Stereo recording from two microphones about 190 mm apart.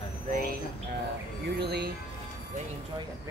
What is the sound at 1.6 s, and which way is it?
Speech, 60° right (ahead or behind).